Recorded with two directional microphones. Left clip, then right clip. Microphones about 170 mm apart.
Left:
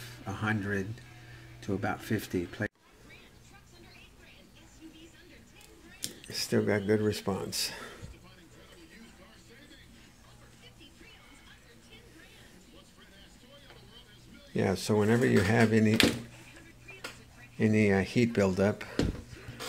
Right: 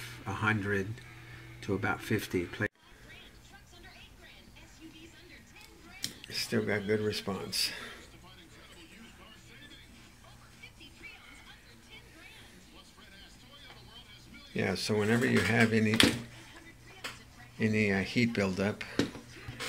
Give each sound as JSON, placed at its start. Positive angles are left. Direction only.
{"t": 0.0, "sound": "a sound", "side_deg": 10}
{"t": 1.6, "sound": "speech", "side_deg": 10}
{"t": 6.2, "sound": "speech", "side_deg": 40}
{"t": 14.5, "sound": "speech", "side_deg": 35}
{"t": 17.6, "sound": "speech", "side_deg": 40}